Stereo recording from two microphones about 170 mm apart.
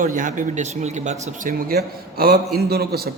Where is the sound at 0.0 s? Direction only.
50° right (ahead or behind).